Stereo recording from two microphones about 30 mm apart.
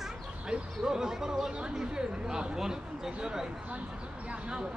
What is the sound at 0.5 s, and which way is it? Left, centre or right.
A man's voice, right.